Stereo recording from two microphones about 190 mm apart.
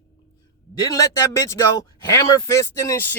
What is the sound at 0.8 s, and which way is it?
Speech, 15° left (ahead or behind).